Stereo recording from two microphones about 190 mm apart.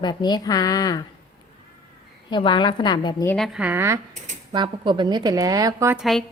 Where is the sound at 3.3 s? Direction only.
Centre (ahead or behind).